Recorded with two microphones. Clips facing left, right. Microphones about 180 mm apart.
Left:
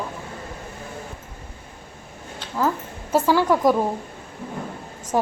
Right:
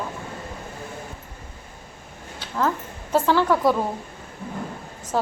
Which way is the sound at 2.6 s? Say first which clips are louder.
Left 1 dB; 10° left (ahead or behind).